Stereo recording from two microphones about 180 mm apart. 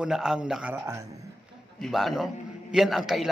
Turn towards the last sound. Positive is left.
turn(degrees=0)  # may be behind; listen again after turning